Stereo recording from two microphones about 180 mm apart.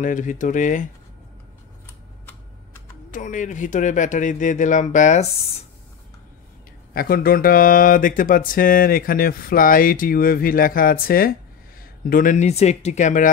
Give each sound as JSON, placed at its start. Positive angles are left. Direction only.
{"t": 0.0, "sound": "speech", "side_deg": 45}
{"t": 3.1, "sound": "speech", "side_deg": 45}
{"t": 6.9, "sound": "speech", "side_deg": 55}